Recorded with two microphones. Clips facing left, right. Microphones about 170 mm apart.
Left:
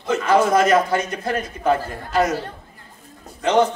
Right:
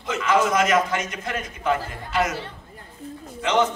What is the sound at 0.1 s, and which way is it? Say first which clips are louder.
A man's voice: left 4 dB; 35° left (ahead or behind).